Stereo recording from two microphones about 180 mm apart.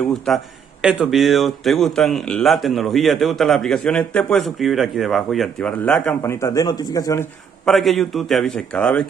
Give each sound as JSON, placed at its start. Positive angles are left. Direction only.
{"t": 0.1, "sound": "speech", "side_deg": 0}
{"t": 7.6, "sound": "speech", "side_deg": 0}